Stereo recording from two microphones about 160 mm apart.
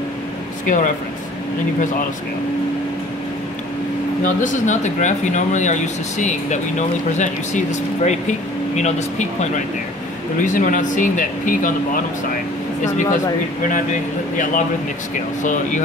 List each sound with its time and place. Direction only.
0.7 s speech: 55° left (ahead or behind)
4.2 s speech: 55° left (ahead or behind)
14.3 s speech: 55° left (ahead or behind)